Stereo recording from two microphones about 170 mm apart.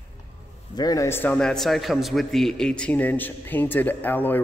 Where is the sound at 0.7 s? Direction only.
20° left (ahead or behind).